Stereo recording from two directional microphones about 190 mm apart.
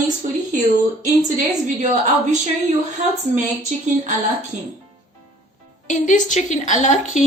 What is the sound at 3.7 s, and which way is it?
Speech, 40° right (ahead or behind).